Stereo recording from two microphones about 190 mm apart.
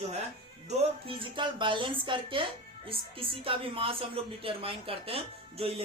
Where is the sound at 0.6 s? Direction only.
35° right (ahead or behind).